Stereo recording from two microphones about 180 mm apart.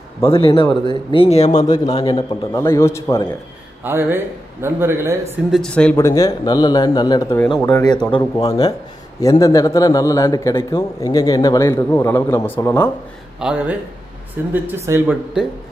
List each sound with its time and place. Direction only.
0.2 s speech: 30° left (ahead or behind)
1.5 s a man's voice: 20° left (ahead or behind)
3.8 s speech: 10° right (ahead or behind)
5.5 s speech: 5° left (ahead or behind)
6.0 s a man's voice: 20° left (ahead or behind)
9.4 s a man's voice: 20° left (ahead or behind)
13.4 s speech: 5° right (ahead or behind)